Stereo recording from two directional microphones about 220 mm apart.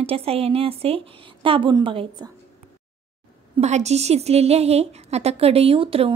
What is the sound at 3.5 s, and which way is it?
A woman's voice, 30° right (ahead or behind).